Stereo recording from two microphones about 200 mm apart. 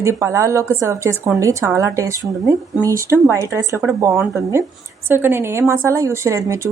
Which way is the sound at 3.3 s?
15° right (ahead or behind).